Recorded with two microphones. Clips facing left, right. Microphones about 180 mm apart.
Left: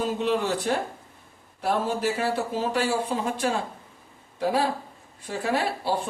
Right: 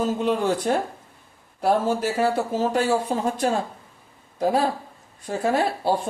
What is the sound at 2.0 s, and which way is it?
A woman's voice, 45° right (ahead or behind).